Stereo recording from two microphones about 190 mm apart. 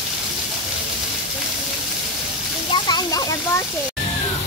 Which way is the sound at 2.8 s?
20° left (ahead or behind).